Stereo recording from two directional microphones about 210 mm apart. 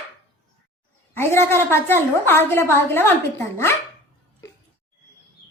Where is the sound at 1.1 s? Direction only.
10° left (ahead or behind).